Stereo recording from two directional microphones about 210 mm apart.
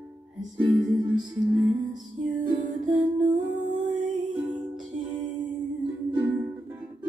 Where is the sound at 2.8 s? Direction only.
35° right (ahead or behind).